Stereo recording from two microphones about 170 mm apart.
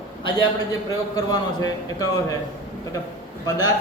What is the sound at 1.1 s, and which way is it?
Speech, 20° left (ahead or behind).